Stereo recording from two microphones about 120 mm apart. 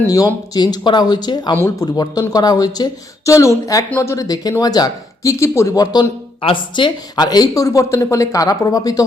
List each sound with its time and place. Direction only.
0.1 s speech: 30° left (ahead or behind)
6.4 s speech: 45° left (ahead or behind)